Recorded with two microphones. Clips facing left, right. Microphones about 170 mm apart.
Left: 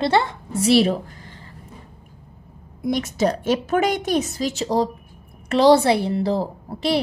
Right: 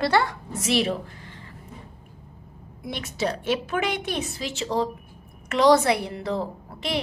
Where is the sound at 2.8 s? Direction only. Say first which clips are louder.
Left 7 dB; 45° left (ahead or behind).